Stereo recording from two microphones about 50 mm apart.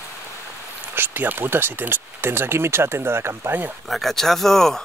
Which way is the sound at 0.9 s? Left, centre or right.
Right.